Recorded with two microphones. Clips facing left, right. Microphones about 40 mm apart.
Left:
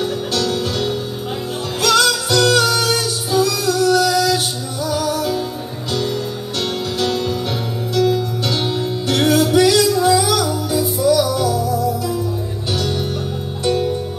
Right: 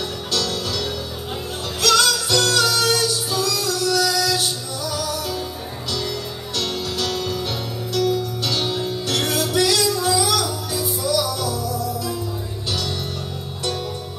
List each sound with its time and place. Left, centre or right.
0.0 s music: left
6.6 s music: left
7.9 s music: left
8.5 s music: centre